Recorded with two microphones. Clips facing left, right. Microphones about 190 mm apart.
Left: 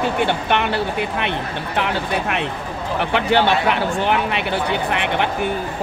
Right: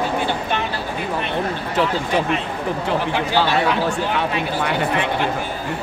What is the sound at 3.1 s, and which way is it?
A woman's voice, 65° left (ahead or behind).